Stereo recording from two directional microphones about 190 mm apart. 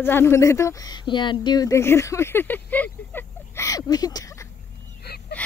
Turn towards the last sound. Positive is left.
turn(degrees=55)  # may be behind; listen again after turning